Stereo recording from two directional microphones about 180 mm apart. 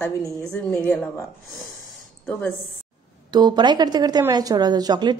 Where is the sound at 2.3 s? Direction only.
10° left (ahead or behind).